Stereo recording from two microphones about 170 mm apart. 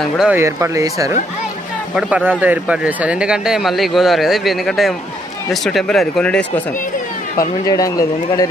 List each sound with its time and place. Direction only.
0.2 s speech: 10° right (ahead or behind)
2.0 s speech: 5° right (ahead or behind)
7.3 s speech: 20° left (ahead or behind)